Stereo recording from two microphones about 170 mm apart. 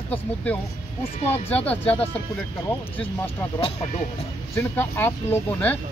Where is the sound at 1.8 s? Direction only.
35° left (ahead or behind).